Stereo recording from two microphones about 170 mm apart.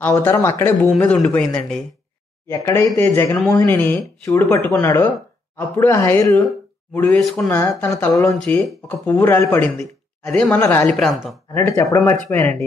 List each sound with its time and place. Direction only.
0.0 s speech: 15° left (ahead or behind)
2.4 s speech: 15° left (ahead or behind)
7.4 s speech: 15° left (ahead or behind)
8.4 s speech: 5° left (ahead or behind)